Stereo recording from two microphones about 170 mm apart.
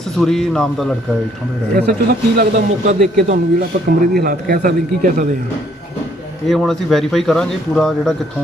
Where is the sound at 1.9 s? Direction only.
65° right (ahead or behind).